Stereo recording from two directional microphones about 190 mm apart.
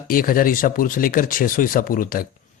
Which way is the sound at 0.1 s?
50° left (ahead or behind).